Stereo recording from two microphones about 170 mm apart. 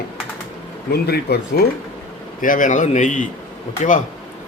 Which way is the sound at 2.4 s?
50° left (ahead or behind).